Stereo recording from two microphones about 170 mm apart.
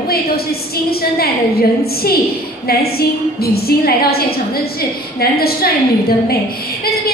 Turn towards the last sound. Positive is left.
turn(degrees=65)  # may be behind; listen again after turning